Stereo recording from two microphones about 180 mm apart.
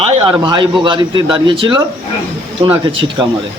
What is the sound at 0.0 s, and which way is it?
A man's voice, 30° right (ahead or behind).